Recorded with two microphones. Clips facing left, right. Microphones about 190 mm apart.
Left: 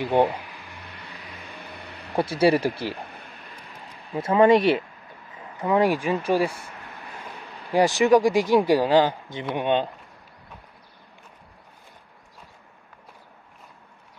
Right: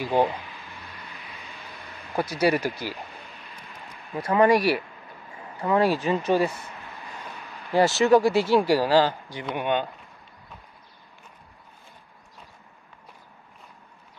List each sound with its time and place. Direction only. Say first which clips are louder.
0.5 s a sound: even; 70° left (ahead or behind)
2.1 s speech: left 3 dB; 30° left (ahead or behind)
4.1 s speech: left 3 dB; 25° left (ahead or behind)
7.7 s speech: left 1 dB; 15° left (ahead or behind)